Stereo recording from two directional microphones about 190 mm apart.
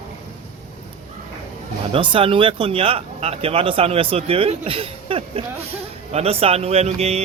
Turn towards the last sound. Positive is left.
turn(degrees=-35)  # may be behind; listen again after turning